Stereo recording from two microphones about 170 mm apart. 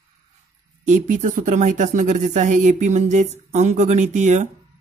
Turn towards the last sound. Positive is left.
turn(degrees=-45)  # may be behind; listen again after turning